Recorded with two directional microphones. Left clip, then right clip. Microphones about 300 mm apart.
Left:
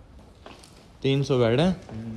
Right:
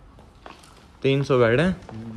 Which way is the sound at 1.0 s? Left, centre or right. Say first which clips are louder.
Right 4 dB; centre.